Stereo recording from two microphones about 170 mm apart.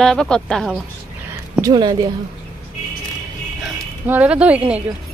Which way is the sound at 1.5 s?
20° right (ahead or behind).